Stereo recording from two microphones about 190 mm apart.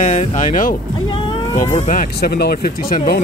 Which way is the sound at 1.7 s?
45° left (ahead or behind).